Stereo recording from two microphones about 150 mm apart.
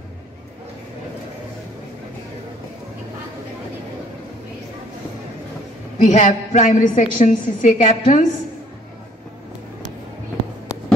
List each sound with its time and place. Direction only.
5.9 s a woman's voice: 55° left (ahead or behind)